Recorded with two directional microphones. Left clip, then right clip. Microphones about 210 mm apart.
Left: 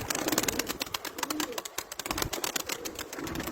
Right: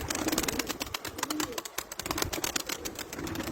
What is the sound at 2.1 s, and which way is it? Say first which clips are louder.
Typing: even; 20° left (ahead or behind).